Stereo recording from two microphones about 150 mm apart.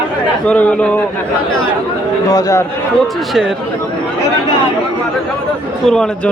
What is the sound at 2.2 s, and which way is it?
Speech, 20° left (ahead or behind).